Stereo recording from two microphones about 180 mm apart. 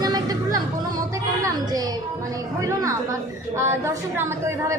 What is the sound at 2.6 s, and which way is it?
A woman's voice, 15° right (ahead or behind).